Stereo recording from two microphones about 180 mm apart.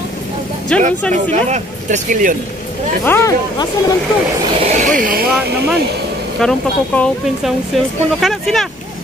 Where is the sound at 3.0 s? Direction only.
10° left (ahead or behind).